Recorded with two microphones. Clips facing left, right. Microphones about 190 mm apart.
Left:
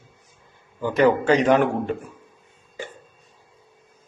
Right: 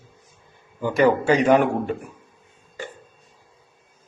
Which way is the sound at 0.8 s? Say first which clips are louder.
Even; 10° right (ahead or behind).